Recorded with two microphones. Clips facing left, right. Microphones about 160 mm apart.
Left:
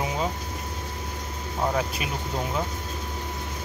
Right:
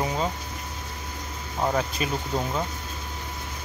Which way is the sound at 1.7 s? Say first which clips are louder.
Right 1 dB; 5° left (ahead or behind).